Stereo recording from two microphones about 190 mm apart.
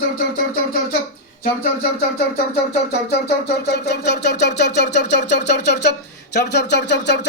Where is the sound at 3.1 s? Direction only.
60° left (ahead or behind).